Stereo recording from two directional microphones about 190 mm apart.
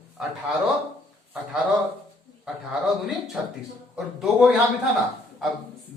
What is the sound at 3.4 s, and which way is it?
A man's voice, 5° right (ahead or behind).